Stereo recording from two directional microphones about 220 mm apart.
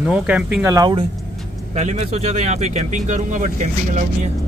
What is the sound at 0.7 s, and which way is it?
Speech, 20° right (ahead or behind).